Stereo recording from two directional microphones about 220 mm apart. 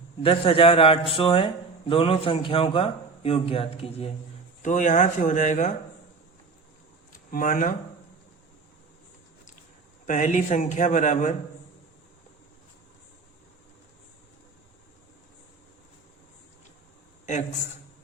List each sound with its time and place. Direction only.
0.2 s a man's voice: 25° left (ahead or behind)
7.3 s a man's voice: 40° left (ahead or behind)
10.1 s a man's voice: 35° left (ahead or behind)